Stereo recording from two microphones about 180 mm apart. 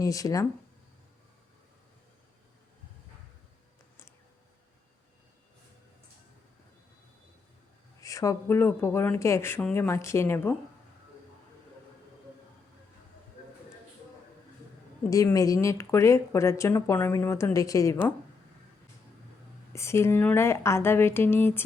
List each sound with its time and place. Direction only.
0.0 s speech: 20° left (ahead or behind)
8.0 s speech: 15° left (ahead or behind)
15.1 s speech: 20° left (ahead or behind)
19.7 s speech: 15° left (ahead or behind)